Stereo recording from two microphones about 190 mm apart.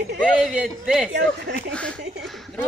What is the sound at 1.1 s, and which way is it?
Speech, 60° right (ahead or behind).